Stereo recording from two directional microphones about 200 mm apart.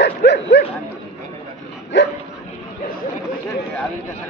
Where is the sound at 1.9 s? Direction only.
60° left (ahead or behind).